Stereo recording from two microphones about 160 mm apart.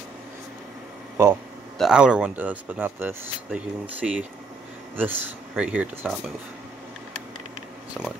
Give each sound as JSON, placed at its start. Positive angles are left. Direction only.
{"t": 1.1, "sound": "speech", "side_deg": -15}
{"t": 1.8, "sound": "speech", "side_deg": -5}
{"t": 8.0, "sound": "speech", "side_deg": 0}